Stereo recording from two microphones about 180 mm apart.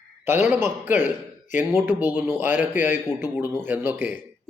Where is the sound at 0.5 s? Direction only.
10° right (ahead or behind).